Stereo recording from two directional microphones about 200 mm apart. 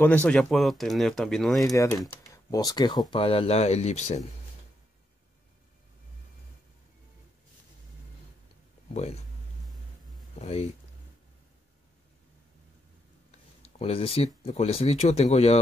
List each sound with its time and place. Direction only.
0.0 s speech: 10° left (ahead or behind)
1.6 s speech: 15° left (ahead or behind); by 4.2 s 35° left (ahead or behind)
10.4 s speech: 30° left (ahead or behind)
13.3 s speech: 30° left (ahead or behind)